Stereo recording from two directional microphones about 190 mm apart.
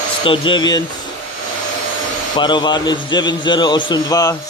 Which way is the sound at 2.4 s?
25° left (ahead or behind).